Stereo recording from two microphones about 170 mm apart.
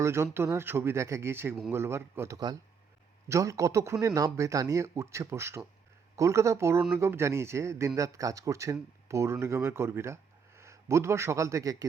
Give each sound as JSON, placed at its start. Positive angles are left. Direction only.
{"t": 0.0, "sound": "a man's voice", "side_deg": -15}